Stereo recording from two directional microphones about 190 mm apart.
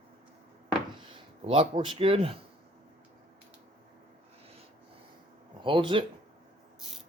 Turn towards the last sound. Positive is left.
turn(degrees=-25)  # may be behind; listen again after turning